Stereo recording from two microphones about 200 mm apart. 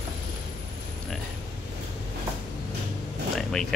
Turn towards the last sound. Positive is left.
turn(degrees=0)  # may be behind; listen again after turning